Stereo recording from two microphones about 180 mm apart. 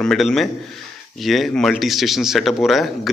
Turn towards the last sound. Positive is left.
turn(degrees=0)  # may be behind; listen again after turning